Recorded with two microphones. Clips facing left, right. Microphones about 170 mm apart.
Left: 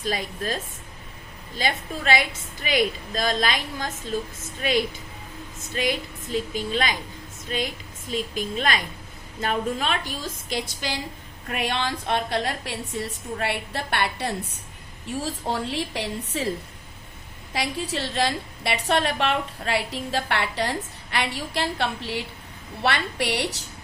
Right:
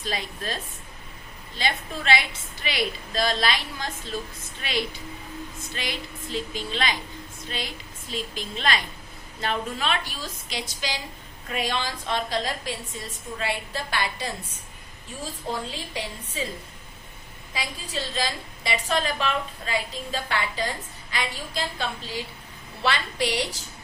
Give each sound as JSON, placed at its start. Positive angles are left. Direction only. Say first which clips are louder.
{"t": 0.0, "sound": "a woman's voice", "louder": "left 4 dB", "side_deg": 45}
{"t": 6.3, "sound": "a woman's voice", "louder": "left 5 dB", "side_deg": 45}
{"t": 8.1, "sound": "a woman's voice", "louder": "left 5 dB", "side_deg": 50}
{"t": 17.5, "sound": "a woman's voice", "louder": "left 5 dB", "side_deg": 70}